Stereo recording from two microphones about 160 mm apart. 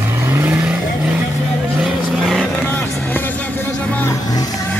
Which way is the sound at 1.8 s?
Centre (ahead or behind).